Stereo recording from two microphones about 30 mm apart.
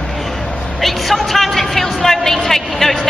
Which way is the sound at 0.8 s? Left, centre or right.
Centre.